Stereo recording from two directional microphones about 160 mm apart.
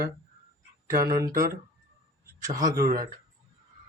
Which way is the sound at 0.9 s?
20° right (ahead or behind).